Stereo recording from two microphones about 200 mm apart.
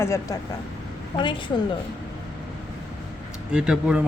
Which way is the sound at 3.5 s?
5° right (ahead or behind).